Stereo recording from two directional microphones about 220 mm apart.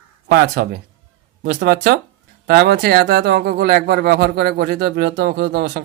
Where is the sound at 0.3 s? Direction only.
45° right (ahead or behind).